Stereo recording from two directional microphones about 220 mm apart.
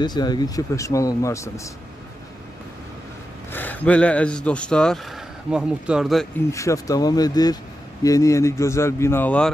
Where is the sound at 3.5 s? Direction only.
10° left (ahead or behind).